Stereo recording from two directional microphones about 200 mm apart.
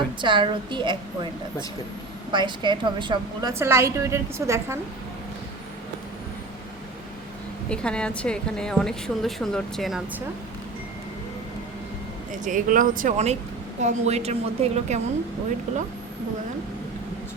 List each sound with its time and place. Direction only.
0.2 s a woman's voice: 25° right (ahead or behind)
3.5 s a woman's voice: 15° right (ahead or behind)
7.7 s a woman's voice: 5° left (ahead or behind)
12.3 s speech: 40° right (ahead or behind)